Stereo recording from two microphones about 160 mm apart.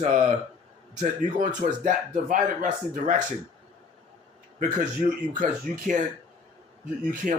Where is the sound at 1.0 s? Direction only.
50° right (ahead or behind).